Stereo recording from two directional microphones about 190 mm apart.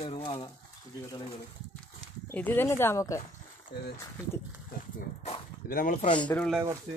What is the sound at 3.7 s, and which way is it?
Speech, 60° left (ahead or behind).